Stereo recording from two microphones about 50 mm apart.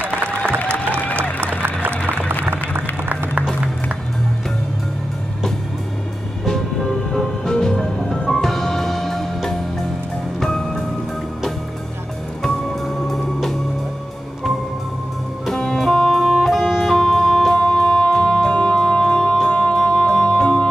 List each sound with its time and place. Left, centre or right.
1.4 s applause: right
2.0 s music: right
6.4 s music: centre
12.8 s music: centre
15.4 s music: centre
17.5 s music: centre